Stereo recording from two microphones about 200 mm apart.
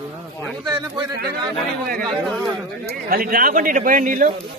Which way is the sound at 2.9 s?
45° right (ahead or behind).